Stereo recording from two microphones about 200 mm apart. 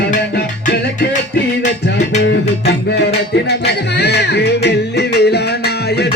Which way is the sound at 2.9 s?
55° left (ahead or behind).